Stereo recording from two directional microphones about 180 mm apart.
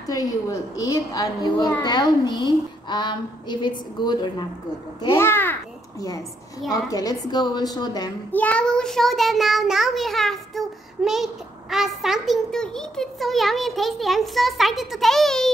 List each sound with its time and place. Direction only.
0.0 s child singing: 20° left (ahead or behind)
5.1 s a child's voice: 10° left (ahead or behind)
6.9 s child singing: 20° left (ahead or behind)
8.3 s a child's voice: 10° left (ahead or behind)